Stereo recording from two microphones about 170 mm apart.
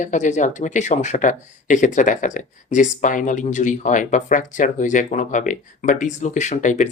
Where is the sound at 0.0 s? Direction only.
45° left (ahead or behind).